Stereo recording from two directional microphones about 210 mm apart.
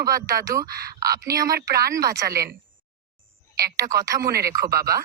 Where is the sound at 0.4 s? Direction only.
15° right (ahead or behind).